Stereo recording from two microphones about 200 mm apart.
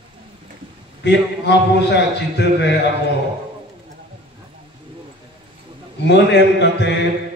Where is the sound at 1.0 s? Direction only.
60° left (ahead or behind).